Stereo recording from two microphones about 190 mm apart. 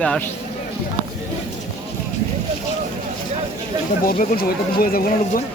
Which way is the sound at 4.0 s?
50° left (ahead or behind).